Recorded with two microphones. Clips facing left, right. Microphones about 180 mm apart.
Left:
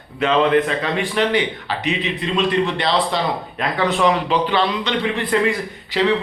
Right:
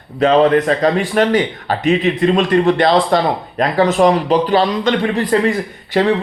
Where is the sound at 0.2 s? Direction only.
40° right (ahead or behind).